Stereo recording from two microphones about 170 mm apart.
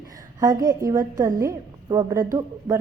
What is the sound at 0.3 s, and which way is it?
A woman's voice, 20° right (ahead or behind).